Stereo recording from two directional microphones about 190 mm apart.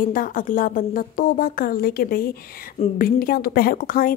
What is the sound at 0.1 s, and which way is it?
A woman's voice, 45° left (ahead or behind).